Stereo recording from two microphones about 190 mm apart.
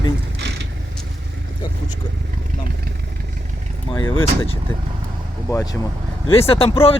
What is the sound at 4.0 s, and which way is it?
Speech, 90° left.